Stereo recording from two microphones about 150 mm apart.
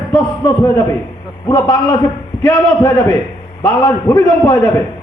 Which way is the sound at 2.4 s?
15° left (ahead or behind).